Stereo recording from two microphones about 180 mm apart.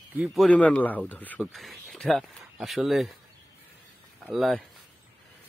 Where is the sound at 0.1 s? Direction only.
5° right (ahead or behind).